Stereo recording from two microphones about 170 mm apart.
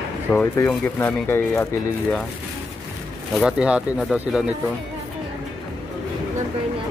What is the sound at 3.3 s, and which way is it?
Speech, 5° right (ahead or behind).